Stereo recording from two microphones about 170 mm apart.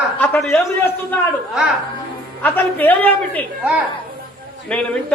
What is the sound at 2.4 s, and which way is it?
A man's voice, 10° left (ahead or behind).